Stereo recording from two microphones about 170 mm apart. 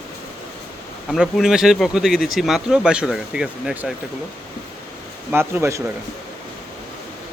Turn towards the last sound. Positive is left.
turn(degrees=-15)  # may be behind; listen again after turning